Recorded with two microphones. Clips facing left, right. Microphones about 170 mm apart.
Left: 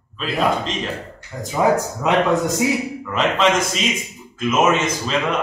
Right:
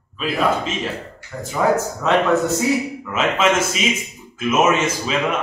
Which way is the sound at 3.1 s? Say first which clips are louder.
Left 1 dB; 5° right (ahead or behind).